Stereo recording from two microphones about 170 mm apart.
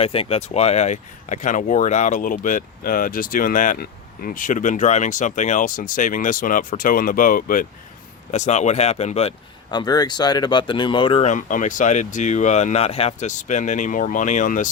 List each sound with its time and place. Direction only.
0.0 s speech: 35° left (ahead or behind); by 7.7 s 55° left (ahead or behind)
8.3 s speech: 40° left (ahead or behind)
9.6 s speech: 25° left (ahead or behind)
11.3 s speech: 50° left (ahead or behind)